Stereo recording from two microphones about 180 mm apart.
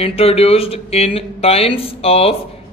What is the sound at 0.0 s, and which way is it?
A man's voice, 35° left (ahead or behind).